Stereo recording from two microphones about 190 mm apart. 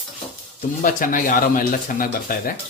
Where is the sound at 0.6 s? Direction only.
45° left (ahead or behind).